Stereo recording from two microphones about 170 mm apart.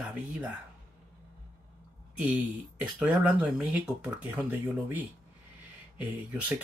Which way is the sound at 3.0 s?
10° right (ahead or behind).